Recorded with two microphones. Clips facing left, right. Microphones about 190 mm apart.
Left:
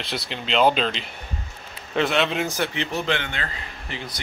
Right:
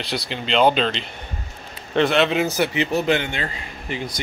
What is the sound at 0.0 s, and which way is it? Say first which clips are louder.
Speech: right 3 dB; centre (ahead or behind).